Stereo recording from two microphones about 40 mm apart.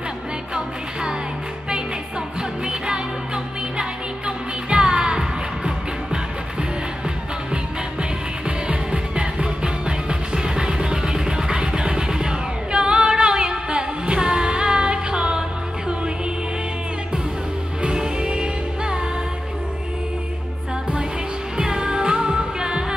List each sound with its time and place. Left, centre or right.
4.6 s music: right
8.5 s music: right
17.8 s music: centre
21.5 s music: right